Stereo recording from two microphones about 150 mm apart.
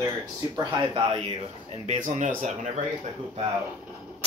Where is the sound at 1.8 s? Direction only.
55° right (ahead or behind).